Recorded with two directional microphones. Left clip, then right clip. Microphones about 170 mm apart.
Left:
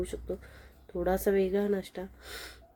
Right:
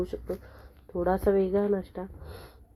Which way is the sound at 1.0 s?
25° left (ahead or behind).